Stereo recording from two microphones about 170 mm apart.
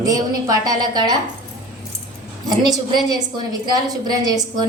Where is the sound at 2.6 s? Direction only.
25° right (ahead or behind).